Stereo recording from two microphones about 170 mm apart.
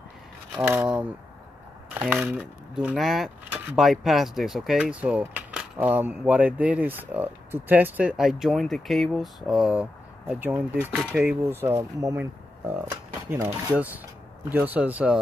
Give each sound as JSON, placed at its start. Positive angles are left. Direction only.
{"t": 0.7, "sound": "speech", "side_deg": -5}
{"t": 2.1, "sound": "speech", "side_deg": -5}